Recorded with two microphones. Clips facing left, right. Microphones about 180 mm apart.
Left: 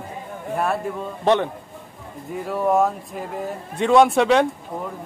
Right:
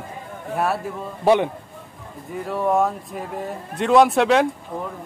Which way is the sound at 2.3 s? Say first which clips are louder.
Left 1 dB; centre (ahead or behind).